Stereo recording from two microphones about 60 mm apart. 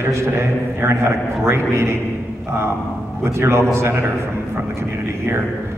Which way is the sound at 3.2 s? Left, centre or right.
Right.